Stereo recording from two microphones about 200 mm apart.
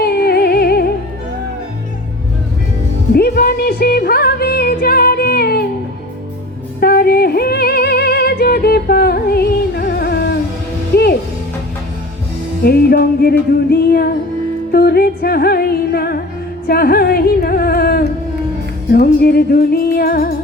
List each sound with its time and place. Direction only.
0.0 s music: 50° left (ahead or behind)
3.1 s music: 50° left (ahead or behind)
6.7 s music: 50° left (ahead or behind)
12.6 s music: 50° left (ahead or behind)